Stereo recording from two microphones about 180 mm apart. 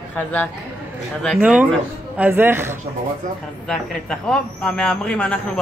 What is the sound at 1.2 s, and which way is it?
A man's voice, centre (ahead or behind).